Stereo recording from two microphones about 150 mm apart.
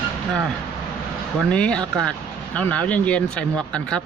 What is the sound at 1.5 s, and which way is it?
Speech, 5° left (ahead or behind).